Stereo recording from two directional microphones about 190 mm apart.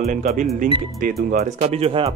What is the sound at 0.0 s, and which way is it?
Speech, 40° right (ahead or behind).